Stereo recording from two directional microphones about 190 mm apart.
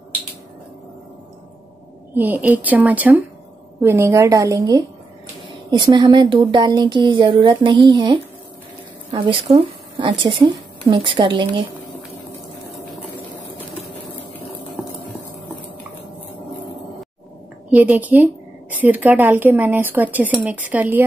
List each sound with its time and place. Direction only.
2.1 s a woman's voice: 10° right (ahead or behind); by 11.6 s 25° right (ahead or behind)
17.6 s speech: 10° right (ahead or behind)